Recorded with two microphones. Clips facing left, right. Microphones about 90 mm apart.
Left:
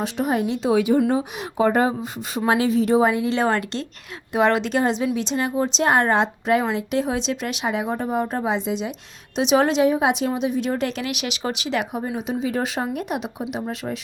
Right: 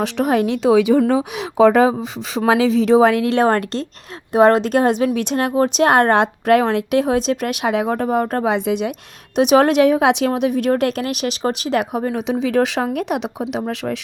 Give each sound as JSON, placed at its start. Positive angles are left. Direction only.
{"t": 0.0, "sound": "speech", "side_deg": -75}